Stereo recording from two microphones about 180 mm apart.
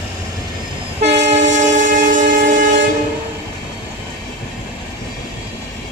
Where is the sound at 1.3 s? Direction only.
40° right (ahead or behind).